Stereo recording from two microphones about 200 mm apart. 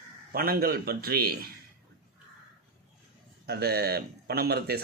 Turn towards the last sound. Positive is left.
turn(degrees=-50)  # may be behind; listen again after turning